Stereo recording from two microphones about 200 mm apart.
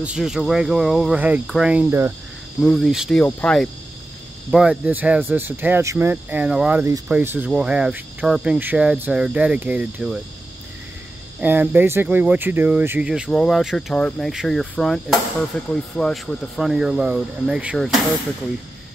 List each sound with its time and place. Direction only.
0.0 s speech: 5° right (ahead or behind)
2.6 s speech: centre (ahead or behind)
4.5 s speech: 5° right (ahead or behind)
11.4 s speech: 10° right (ahead or behind)